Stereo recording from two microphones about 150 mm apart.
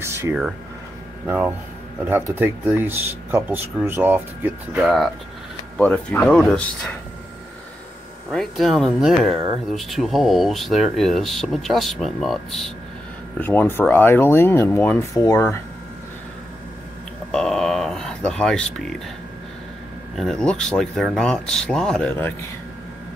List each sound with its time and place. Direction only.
0.0 s a sound: 15° right (ahead or behind)
1.2 s speech: 10° right (ahead or behind)
4.7 s speech: centre (ahead or behind)
8.3 s speech: centre (ahead or behind)
13.4 s speech: 15° left (ahead or behind)
17.3 s a sound: 5° left (ahead or behind)
20.2 s speech: centre (ahead or behind)